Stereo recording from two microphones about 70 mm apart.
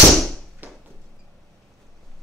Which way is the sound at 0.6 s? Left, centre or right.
Right.